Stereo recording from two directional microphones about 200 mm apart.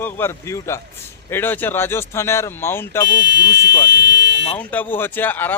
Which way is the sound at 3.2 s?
60° right (ahead or behind).